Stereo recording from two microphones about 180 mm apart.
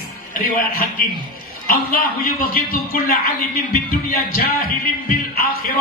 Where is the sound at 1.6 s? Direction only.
55° left (ahead or behind).